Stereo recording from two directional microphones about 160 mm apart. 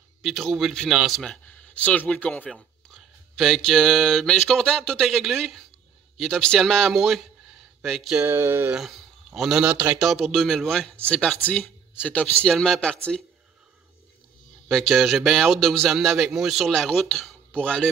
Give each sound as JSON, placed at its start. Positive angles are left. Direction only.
{"t": 0.2, "sound": "a man's voice", "side_deg": 0}
{"t": 8.2, "sound": "a sound", "side_deg": -15}
{"t": 8.7, "sound": "a man's voice", "side_deg": 0}
{"t": 14.7, "sound": "a man's voice", "side_deg": 0}